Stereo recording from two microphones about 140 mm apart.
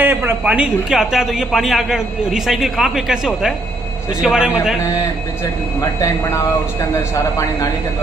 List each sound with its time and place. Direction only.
0.0 s speech: 15° right (ahead or behind)
5.9 s speech: 25° left (ahead or behind)